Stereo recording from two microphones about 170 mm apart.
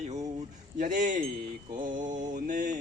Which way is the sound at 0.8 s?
50° right (ahead or behind).